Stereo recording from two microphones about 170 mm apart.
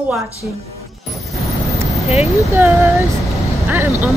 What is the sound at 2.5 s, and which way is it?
Speech, 15° right (ahead or behind).